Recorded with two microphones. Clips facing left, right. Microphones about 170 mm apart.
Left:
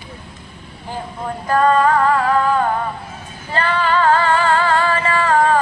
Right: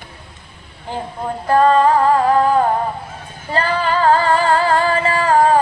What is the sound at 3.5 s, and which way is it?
Female singing, 35° right (ahead or behind).